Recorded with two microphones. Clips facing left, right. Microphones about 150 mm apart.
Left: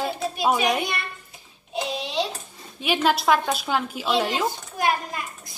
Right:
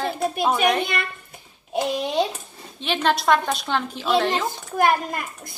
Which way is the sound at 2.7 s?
10° left (ahead or behind).